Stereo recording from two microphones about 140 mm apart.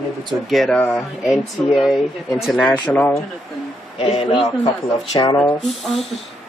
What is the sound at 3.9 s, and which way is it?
Speech, 45° left (ahead or behind).